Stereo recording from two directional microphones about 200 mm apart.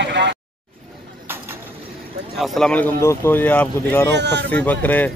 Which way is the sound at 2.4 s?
Centre (ahead or behind).